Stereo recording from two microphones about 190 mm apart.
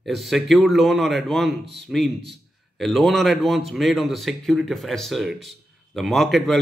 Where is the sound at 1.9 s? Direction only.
Centre (ahead or behind).